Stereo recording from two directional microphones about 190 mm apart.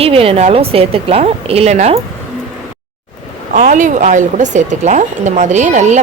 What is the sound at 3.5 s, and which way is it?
A woman's voice, 40° right (ahead or behind).